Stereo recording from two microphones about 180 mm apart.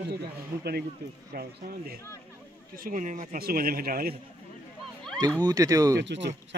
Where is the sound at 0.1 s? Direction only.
65° right (ahead or behind).